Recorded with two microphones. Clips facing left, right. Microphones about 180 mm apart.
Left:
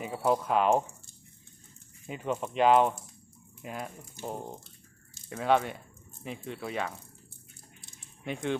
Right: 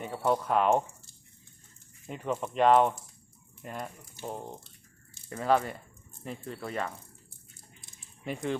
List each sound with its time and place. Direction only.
0.0 s speech: 5° left (ahead or behind)
2.0 s speech: centre (ahead or behind)
5.3 s speech: centre (ahead or behind)
8.2 s speech: centre (ahead or behind)